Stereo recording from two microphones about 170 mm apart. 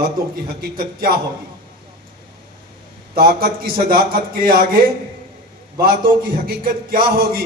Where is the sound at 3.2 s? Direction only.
65° right (ahead or behind).